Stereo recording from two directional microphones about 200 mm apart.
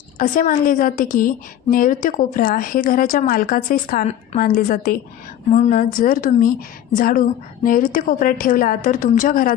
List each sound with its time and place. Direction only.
0.2 s a woman's voice: 40° left (ahead or behind)